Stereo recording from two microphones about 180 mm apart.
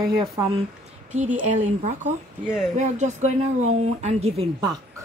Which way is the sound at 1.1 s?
45° right (ahead or behind).